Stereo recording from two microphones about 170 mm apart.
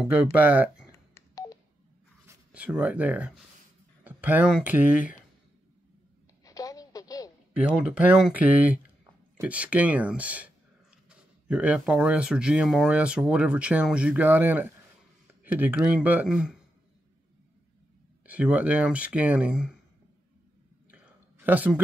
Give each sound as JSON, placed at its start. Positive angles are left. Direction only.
{"t": 0.0, "sound": "speech", "side_deg": -10}
{"t": 0.9, "sound": "telephone dialing", "side_deg": 20}
{"t": 2.2, "sound": "speech", "side_deg": -10}
{"t": 6.4, "sound": "a sound", "side_deg": 20}
{"t": 7.5, "sound": "speech", "side_deg": -5}
{"t": 18.2, "sound": "speech", "side_deg": -10}
{"t": 20.9, "sound": "a sound", "side_deg": -10}